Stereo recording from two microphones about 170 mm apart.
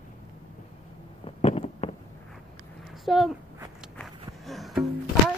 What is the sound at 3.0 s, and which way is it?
Speech, centre (ahead or behind).